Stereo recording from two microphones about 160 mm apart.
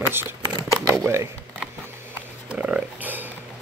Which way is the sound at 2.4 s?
5° right (ahead or behind).